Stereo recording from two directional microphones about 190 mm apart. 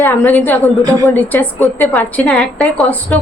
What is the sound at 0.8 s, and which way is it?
Speech, 15° right (ahead or behind).